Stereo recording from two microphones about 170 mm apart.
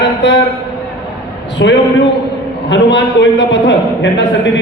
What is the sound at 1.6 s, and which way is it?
A man's voice, 90° left.